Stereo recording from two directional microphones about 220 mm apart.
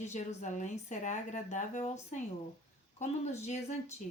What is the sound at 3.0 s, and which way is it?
Speech, 30° left (ahead or behind).